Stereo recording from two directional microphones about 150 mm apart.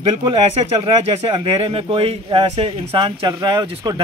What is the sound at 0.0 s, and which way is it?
A man's voice, 30° right (ahead or behind).